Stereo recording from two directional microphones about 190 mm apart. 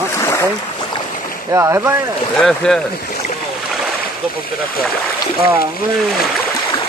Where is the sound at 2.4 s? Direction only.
5° left (ahead or behind).